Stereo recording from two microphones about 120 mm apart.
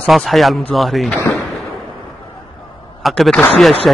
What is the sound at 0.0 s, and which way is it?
Speech, centre (ahead or behind).